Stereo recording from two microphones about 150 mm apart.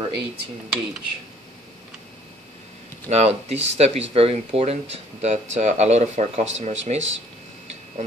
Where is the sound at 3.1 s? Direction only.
45° right (ahead or behind).